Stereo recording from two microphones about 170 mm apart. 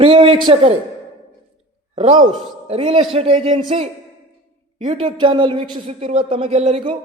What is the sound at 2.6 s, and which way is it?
A man's voice, 35° right (ahead or behind).